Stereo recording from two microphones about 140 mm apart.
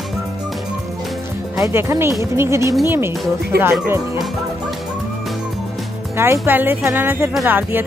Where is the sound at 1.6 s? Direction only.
20° right (ahead or behind).